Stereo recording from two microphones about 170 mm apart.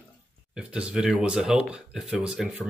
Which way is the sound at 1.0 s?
5° right (ahead or behind).